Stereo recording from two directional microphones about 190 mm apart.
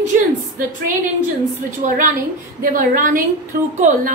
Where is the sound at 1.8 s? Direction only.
45° right (ahead or behind).